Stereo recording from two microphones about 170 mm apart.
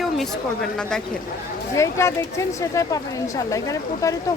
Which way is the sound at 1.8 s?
15° left (ahead or behind).